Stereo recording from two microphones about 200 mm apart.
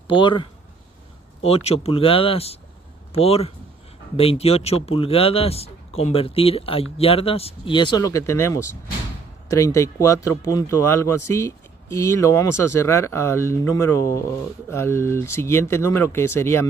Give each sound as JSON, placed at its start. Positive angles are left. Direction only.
{"t": 0.0, "sound": "speech", "side_deg": 25}